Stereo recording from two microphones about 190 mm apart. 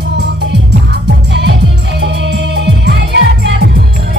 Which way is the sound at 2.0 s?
65° right (ahead or behind).